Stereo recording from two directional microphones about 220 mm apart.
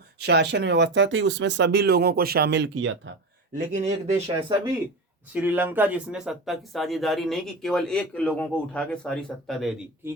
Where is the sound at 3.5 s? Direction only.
35° right (ahead or behind).